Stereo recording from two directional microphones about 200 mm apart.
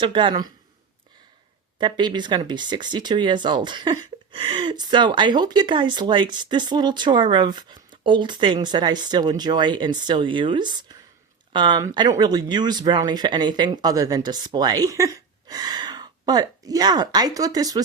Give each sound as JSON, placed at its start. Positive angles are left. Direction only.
{"t": 0.0, "sound": "speech", "side_deg": -25}
{"t": 1.8, "sound": "speech", "side_deg": -20}